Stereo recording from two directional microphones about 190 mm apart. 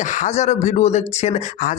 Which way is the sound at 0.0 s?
40° left (ahead or behind).